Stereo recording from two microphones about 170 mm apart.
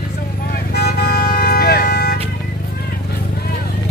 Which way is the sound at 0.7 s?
70° left (ahead or behind).